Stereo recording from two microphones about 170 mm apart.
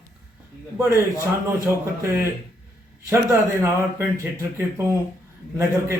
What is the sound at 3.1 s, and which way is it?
Speech, 15° right (ahead or behind).